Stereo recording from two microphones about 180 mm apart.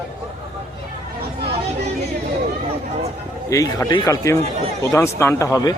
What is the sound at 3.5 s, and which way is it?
A man's voice, 20° left (ahead or behind).